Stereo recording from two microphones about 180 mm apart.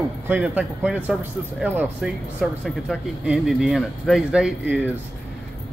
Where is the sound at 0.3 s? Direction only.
10° right (ahead or behind).